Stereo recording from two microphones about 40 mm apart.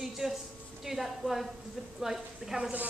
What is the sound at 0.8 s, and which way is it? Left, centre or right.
A man's voice, centre.